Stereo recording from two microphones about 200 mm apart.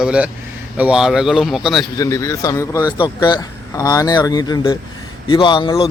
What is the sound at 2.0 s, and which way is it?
A man's voice, 15° left (ahead or behind).